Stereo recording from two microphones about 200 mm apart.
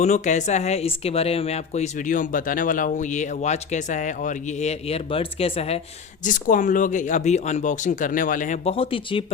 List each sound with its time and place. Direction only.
0.0 s speech: 35° left (ahead or behind)